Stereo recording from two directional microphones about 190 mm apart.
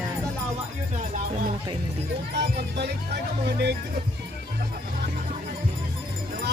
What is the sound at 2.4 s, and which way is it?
Music, 60° right (ahead or behind).